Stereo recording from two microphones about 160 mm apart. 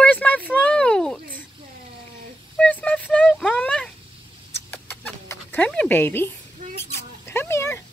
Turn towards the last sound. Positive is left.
turn(degrees=15)  # may be behind; listen again after turning